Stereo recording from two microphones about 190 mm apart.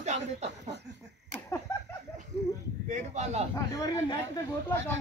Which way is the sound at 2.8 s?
40° right (ahead or behind).